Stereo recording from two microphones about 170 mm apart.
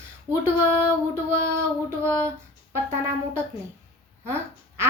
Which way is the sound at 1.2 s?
15° right (ahead or behind).